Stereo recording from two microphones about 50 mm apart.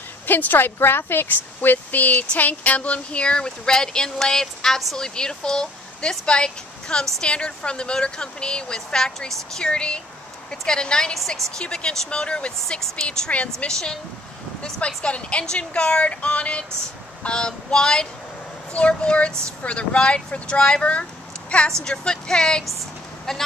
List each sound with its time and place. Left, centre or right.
0.3 s speech: left; by 11.1 s centre
11.1 s speech: centre
23.3 s speech: centre